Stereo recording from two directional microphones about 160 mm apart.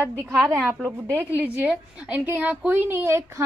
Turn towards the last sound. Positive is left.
turn(degrees=-15)  # may be behind; listen again after turning